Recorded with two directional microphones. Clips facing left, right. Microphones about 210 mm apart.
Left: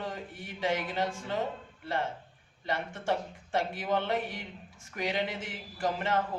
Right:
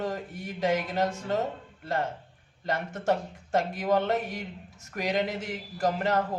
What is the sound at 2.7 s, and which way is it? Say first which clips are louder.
A man's voice: right 4 dB; 40° right (ahead or behind).